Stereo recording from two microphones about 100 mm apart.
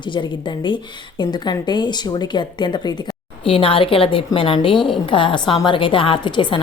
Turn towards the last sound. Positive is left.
turn(degrees=55)  # may be behind; listen again after turning